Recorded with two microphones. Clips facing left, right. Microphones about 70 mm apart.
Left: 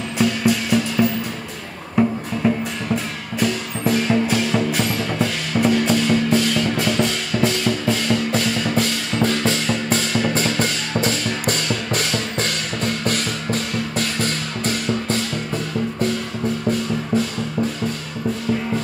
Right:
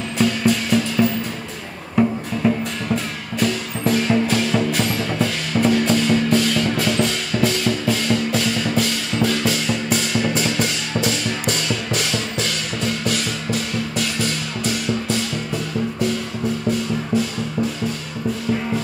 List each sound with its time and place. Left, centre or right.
0.2 s music: centre
3.3 s music: centre; by 15.1 s left